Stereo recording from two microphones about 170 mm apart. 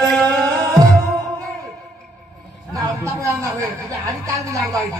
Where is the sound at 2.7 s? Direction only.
20° right (ahead or behind).